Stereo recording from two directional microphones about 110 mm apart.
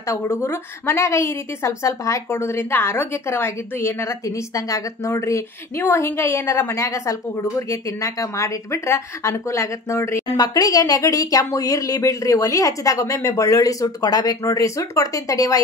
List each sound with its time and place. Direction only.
0.0 s a woman's voice: 25° left (ahead or behind)
10.3 s speech: 35° left (ahead or behind)